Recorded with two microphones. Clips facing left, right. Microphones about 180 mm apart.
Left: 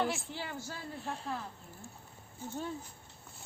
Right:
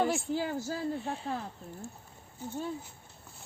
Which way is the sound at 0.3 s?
40° right (ahead or behind).